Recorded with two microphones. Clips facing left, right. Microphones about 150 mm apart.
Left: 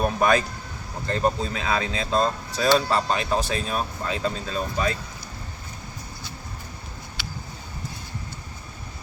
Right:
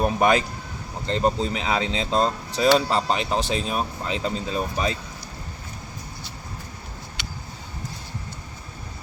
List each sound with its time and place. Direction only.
0.2 s speech: 20° right (ahead or behind)